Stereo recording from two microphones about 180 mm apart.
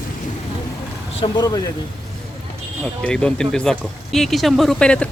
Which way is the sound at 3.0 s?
5° left (ahead or behind).